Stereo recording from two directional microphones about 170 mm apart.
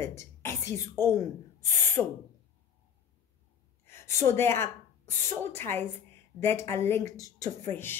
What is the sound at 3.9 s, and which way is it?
A woman's voice, 15° left (ahead or behind).